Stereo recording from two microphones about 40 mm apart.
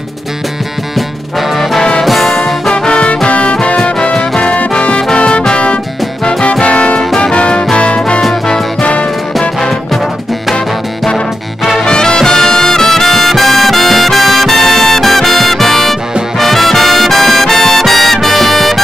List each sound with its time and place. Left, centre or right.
2.0 s music: centre
2.7 s music: left
6.6 s music: left
8.2 s music: centre
8.8 s music: left
11.8 s brass instrument: centre